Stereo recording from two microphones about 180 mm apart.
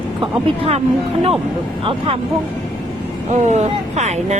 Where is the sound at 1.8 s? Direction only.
30° right (ahead or behind).